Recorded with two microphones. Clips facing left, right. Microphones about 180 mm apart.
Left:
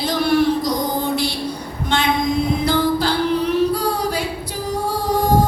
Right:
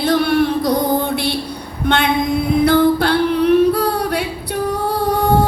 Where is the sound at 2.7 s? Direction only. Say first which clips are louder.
Right 7 dB; 60° right (ahead or behind).